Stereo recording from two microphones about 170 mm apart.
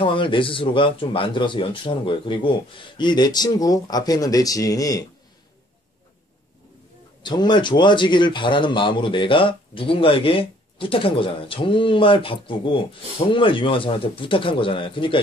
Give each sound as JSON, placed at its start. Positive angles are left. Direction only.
{"t": 0.0, "sound": "speech", "side_deg": 30}
{"t": 7.2, "sound": "a man's voice", "side_deg": 25}